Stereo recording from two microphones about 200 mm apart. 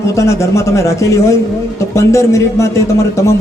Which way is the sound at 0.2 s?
15° left (ahead or behind).